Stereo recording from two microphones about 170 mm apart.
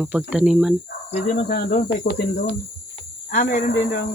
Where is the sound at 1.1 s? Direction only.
35° left (ahead or behind).